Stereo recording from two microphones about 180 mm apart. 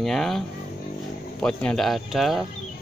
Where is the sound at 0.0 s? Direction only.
Centre (ahead or behind).